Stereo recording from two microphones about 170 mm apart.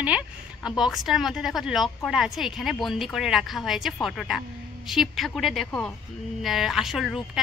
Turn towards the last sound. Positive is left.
turn(degrees=-5)  # may be behind; listen again after turning